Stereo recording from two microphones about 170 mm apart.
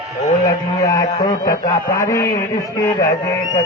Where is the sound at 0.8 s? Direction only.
20° left (ahead or behind).